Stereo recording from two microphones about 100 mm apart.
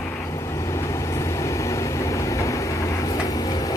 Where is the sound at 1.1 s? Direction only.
30° left (ahead or behind).